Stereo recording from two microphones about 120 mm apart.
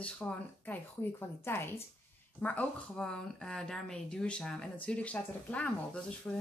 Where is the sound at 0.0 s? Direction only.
15° left (ahead or behind).